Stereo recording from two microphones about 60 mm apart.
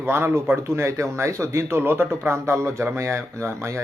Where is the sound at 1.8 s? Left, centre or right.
Right.